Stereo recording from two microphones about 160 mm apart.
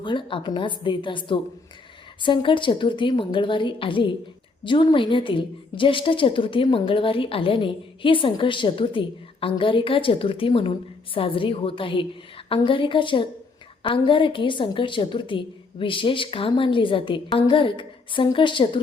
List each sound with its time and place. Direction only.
0.0 s a woman's voice: 30° left (ahead or behind)